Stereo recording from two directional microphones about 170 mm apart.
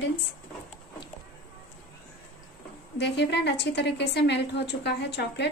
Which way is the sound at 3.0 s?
85° left.